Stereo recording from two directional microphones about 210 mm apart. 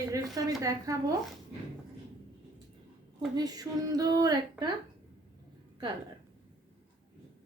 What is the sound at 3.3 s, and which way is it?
A woman's voice, 20° right (ahead or behind).